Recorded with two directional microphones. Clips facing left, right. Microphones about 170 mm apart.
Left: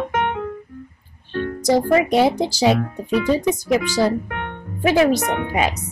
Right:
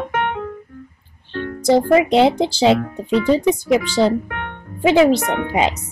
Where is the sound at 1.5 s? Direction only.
25° right (ahead or behind).